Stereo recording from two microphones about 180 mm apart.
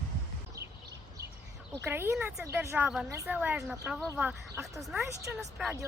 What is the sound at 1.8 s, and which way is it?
Speech, 10° right (ahead or behind).